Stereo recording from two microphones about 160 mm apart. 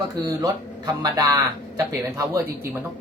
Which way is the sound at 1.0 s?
20° right (ahead or behind).